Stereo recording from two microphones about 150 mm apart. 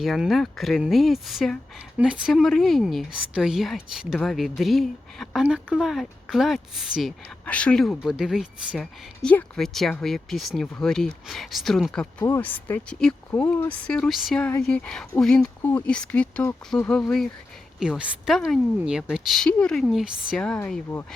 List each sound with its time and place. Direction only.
0.0 s speech: centre (ahead or behind)
12.2 s speech: 15° left (ahead or behind)